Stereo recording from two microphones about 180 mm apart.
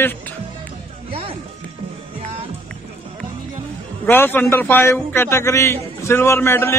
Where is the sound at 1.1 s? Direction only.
30° right (ahead or behind).